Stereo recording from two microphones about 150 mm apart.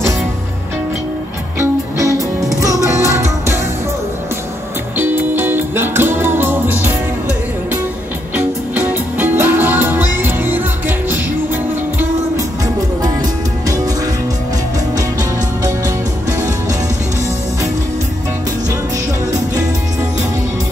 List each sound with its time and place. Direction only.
2.0 s music: 20° right (ahead or behind)
4.9 s music: 15° right (ahead or behind)
8.4 s music: 15° right (ahead or behind)